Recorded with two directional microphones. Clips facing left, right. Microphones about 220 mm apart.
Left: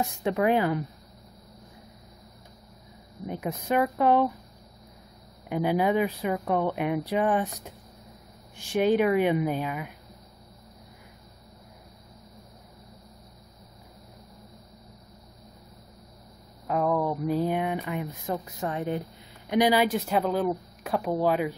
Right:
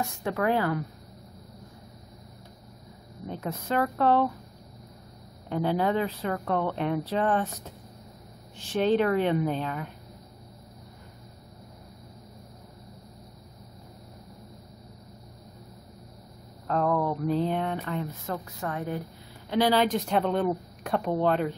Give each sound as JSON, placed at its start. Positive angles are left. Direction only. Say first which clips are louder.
{"t": 0.0, "sound": "speech", "louder": "left 3 dB", "side_deg": 20}
{"t": 3.3, "sound": "speech", "louder": "left 2 dB", "side_deg": 15}
{"t": 5.5, "sound": "speech", "louder": "left 2 dB", "side_deg": 10}
{"t": 16.6, "sound": "speech", "louder": "even", "side_deg": 10}